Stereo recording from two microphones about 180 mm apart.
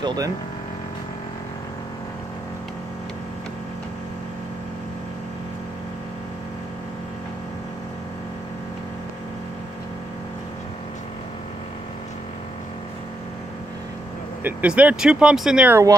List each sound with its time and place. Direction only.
0.0 s speech: 25° right (ahead or behind)
14.4 s speech: 5° right (ahead or behind)